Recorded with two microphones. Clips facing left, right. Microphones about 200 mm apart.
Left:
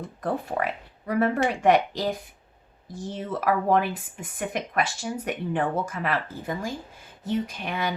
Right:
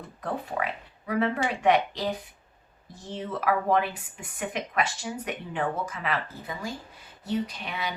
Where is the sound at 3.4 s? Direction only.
45° left (ahead or behind).